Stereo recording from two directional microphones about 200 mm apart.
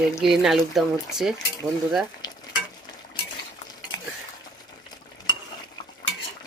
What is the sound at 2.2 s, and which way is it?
Stir, 20° left (ahead or behind).